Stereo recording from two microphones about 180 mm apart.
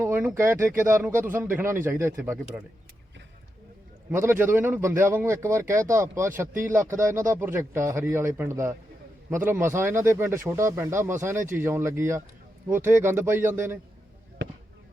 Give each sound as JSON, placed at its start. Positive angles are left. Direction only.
{"t": 0.0, "sound": "speech", "side_deg": -15}
{"t": 4.1, "sound": "speech", "side_deg": -15}